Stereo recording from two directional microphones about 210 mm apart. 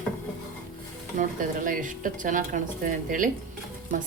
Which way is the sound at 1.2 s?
40° right (ahead or behind).